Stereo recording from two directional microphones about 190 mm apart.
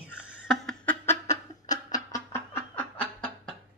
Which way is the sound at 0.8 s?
15° left (ahead or behind).